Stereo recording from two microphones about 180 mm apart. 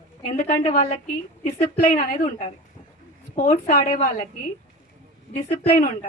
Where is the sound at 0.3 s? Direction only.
50° left (ahead or behind).